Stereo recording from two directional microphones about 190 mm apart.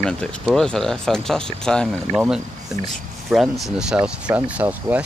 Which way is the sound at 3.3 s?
Centre (ahead or behind).